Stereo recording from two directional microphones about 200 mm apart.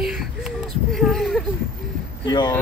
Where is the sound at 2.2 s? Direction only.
20° left (ahead or behind).